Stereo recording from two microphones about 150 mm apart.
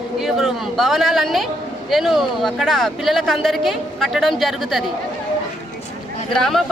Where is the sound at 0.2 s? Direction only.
Centre (ahead or behind).